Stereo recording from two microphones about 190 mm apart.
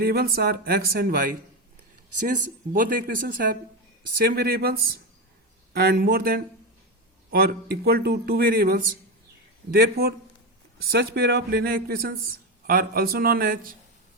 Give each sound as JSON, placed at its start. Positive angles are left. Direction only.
{"t": 0.0, "sound": "speech", "side_deg": -50}